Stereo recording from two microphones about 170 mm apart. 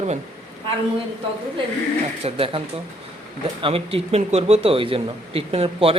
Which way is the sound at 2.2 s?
35° right (ahead or behind).